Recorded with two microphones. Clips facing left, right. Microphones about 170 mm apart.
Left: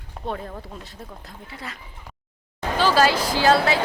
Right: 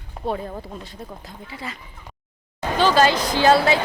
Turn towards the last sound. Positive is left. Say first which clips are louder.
# right 2 dB
turn(degrees=0)  # may be behind; listen again after turning